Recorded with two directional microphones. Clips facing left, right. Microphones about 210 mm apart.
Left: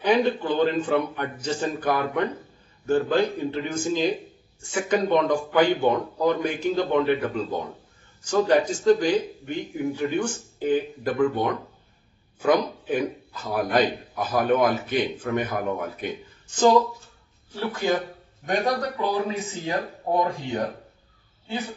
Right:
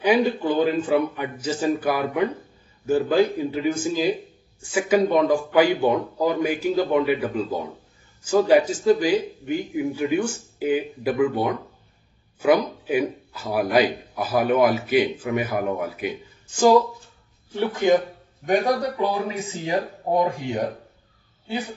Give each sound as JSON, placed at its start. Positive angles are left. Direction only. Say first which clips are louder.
{"t": 0.0, "sound": "a man's voice", "louder": "right 2 dB", "side_deg": -10}
{"t": 17.6, "sound": "speech", "louder": "right 5 dB", "side_deg": -20}
{"t": 18.9, "sound": "a man's voice", "louder": "right 1 dB", "side_deg": -15}